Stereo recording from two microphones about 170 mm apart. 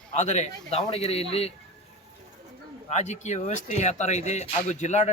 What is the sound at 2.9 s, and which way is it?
Speech, 40° left (ahead or behind).